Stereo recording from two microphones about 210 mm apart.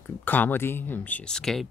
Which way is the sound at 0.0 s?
10° left (ahead or behind).